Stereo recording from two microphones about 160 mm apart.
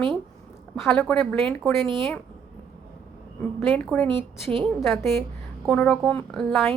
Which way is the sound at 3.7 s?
5° left (ahead or behind).